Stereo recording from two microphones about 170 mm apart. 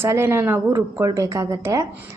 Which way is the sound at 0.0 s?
15° right (ahead or behind).